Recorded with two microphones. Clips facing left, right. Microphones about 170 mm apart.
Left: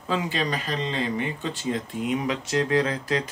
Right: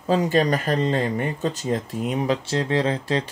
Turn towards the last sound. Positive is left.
turn(degrees=-30)  # may be behind; listen again after turning